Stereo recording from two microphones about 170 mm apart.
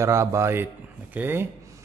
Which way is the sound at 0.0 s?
15° right (ahead or behind).